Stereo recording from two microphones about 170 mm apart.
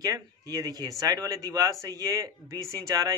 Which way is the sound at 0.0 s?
20° right (ahead or behind).